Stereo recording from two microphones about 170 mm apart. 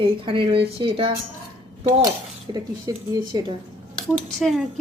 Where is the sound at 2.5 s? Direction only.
25° right (ahead or behind).